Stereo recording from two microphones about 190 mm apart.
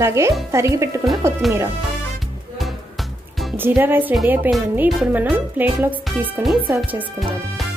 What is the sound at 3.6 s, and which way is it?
Speech, 10° right (ahead or behind).